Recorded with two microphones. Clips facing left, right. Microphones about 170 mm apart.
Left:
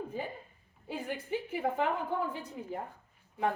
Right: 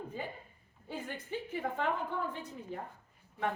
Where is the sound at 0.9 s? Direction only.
10° left (ahead or behind).